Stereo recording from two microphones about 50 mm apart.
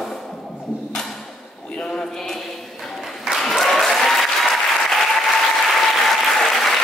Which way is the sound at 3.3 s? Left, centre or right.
Centre.